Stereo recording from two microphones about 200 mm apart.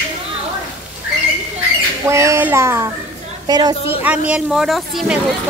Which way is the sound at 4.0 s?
5° right (ahead or behind).